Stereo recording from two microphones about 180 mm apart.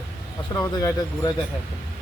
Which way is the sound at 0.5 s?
20° left (ahead or behind).